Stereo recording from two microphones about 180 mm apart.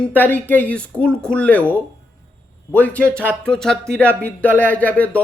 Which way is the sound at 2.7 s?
10° left (ahead or behind).